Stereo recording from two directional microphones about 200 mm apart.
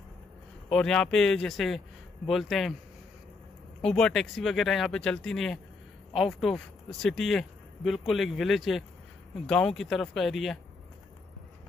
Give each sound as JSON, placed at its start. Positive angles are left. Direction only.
{"t": 0.7, "sound": "speech", "side_deg": 5}
{"t": 3.8, "sound": "speech", "side_deg": 5}